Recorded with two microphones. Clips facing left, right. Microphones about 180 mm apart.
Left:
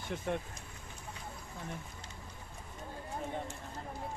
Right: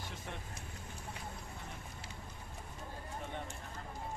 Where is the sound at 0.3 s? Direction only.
55° left (ahead or behind).